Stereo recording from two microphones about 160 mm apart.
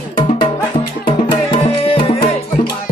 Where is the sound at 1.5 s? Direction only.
35° left (ahead or behind).